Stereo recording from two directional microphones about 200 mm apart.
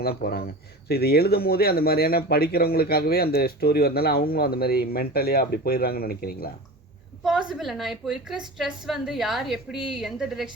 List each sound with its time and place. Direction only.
0.0 s speech: 50° left (ahead or behind)
7.3 s a woman's voice: centre (ahead or behind)